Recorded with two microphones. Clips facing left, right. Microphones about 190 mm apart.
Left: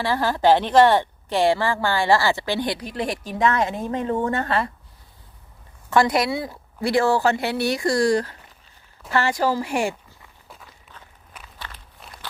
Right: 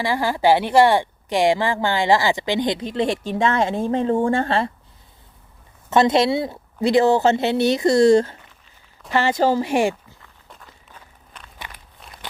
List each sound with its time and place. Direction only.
0.0 s speech: 15° right (ahead or behind)
5.9 s a woman's voice: 25° right (ahead or behind)
11.3 s walk: 5° left (ahead or behind)